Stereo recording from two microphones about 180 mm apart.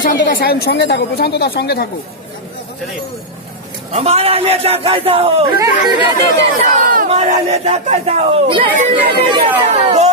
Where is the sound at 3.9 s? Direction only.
35° right (ahead or behind).